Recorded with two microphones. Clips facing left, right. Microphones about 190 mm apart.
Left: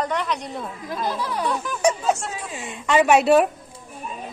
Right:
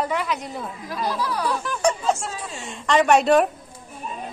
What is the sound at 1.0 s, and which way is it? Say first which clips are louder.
Speech: right 1 dB; 20° left (ahead or behind).